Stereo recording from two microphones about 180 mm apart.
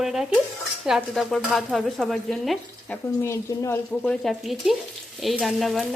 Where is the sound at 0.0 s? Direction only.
Centre (ahead or behind).